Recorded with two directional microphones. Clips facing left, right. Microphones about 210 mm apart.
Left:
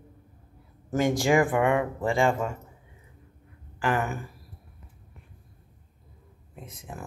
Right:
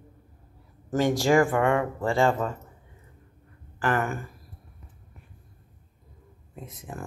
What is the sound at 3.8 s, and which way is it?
Speech, 15° left (ahead or behind).